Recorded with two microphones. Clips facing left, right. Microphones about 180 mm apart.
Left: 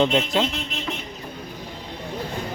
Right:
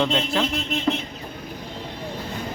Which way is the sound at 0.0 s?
15° left (ahead or behind).